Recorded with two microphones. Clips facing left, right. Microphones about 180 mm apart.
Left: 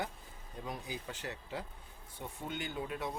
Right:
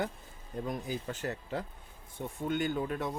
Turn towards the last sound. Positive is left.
turn(degrees=-50)  # may be behind; listen again after turning